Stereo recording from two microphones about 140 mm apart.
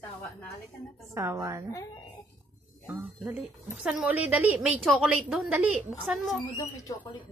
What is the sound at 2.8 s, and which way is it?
A woman's voice, 15° right (ahead or behind).